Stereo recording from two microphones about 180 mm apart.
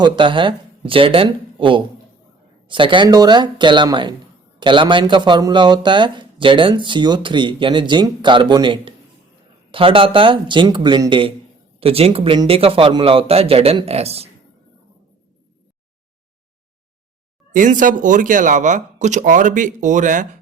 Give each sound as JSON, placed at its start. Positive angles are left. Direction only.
{"t": 0.0, "sound": "a man's voice", "side_deg": -25}
{"t": 17.5, "sound": "speech", "side_deg": -50}